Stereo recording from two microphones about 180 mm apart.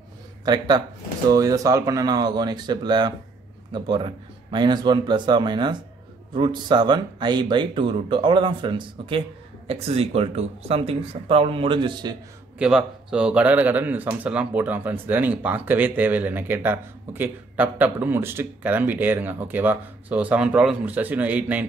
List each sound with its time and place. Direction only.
0.5 s speech: 25° right (ahead or behind)
12.5 s speech: 5° right (ahead or behind)